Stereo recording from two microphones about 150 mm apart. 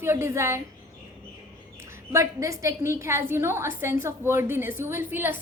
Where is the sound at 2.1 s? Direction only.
20° right (ahead or behind).